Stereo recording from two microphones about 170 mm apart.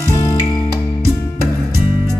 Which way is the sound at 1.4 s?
15° right (ahead or behind).